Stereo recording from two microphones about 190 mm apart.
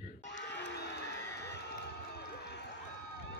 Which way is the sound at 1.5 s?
60° left (ahead or behind).